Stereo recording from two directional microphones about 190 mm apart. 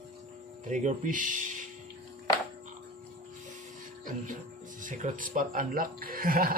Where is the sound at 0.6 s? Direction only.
40° right (ahead or behind).